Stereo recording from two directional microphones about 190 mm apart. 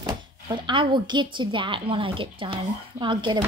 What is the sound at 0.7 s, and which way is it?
A woman's voice, 25° right (ahead or behind).